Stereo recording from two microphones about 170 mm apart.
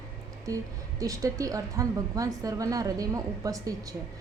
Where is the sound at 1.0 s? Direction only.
20° right (ahead or behind).